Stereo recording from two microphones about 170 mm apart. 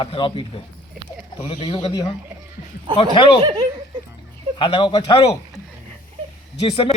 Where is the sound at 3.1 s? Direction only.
30° left (ahead or behind).